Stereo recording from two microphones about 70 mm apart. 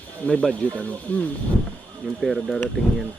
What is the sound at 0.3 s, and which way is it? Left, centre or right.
Speech, centre.